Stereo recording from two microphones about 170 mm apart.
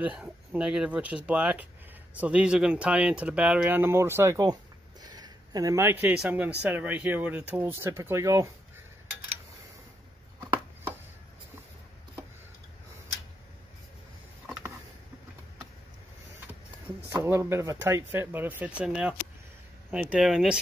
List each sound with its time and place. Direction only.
0.0 s speech: 5° right (ahead or behind)
10.4 s a sound: 15° right (ahead or behind)
17.1 s speech: 15° right (ahead or behind)